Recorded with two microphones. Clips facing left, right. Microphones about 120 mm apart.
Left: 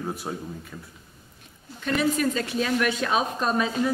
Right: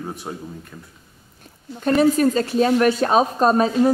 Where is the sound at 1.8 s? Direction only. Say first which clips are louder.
Right 8 dB; 40° right (ahead or behind).